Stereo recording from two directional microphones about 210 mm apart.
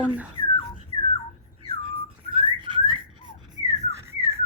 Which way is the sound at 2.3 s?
25° right (ahead or behind).